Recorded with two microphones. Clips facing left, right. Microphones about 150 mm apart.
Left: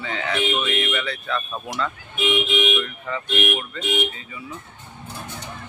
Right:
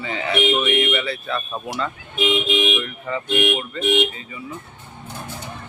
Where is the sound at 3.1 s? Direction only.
10° right (ahead or behind).